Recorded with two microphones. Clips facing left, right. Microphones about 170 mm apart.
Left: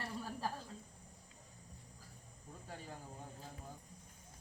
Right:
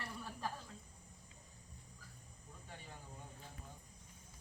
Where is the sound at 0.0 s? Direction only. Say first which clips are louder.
Left 3 dB; 35° left (ahead or behind).